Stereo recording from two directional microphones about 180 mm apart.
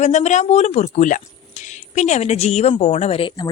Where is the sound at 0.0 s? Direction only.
40° left (ahead or behind).